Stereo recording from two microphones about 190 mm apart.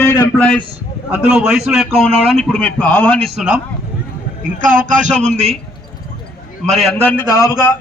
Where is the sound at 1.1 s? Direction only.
5° right (ahead or behind).